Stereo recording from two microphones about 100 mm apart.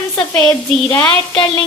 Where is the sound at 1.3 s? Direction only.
55° left (ahead or behind).